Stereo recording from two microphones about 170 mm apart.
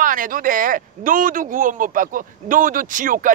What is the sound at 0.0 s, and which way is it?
A man's voice, 50° right (ahead or behind).